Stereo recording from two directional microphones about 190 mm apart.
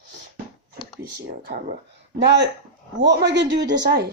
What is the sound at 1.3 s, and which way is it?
Speech, 55° right (ahead or behind).